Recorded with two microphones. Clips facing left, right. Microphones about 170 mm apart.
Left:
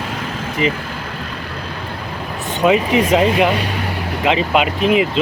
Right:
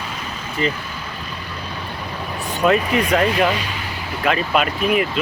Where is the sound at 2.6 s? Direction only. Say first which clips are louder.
Left 3 dB; 15° left (ahead or behind).